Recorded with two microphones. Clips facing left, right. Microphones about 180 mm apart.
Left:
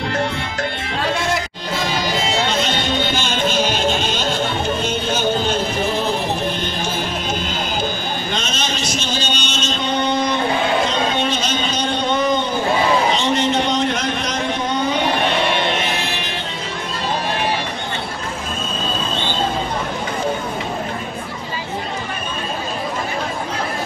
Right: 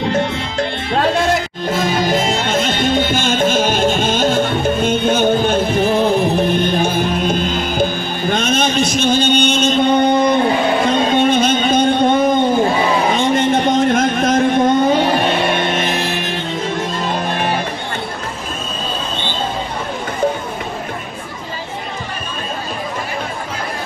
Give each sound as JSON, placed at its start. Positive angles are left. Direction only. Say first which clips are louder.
{"t": 1.7, "sound": "music", "louder": "right 6 dB", "side_deg": -50}
{"t": 8.3, "sound": "a sound", "louder": "right 12 dB", "side_deg": -55}
{"t": 15.5, "sound": "music", "louder": "right 3 dB", "side_deg": -45}